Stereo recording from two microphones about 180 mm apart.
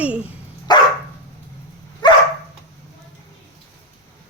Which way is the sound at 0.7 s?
25° left (ahead or behind).